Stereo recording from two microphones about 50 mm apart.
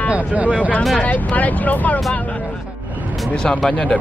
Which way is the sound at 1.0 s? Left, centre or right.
Left.